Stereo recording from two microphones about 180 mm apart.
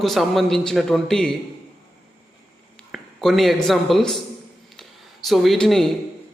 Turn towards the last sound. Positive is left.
turn(degrees=0)  # may be behind; listen again after turning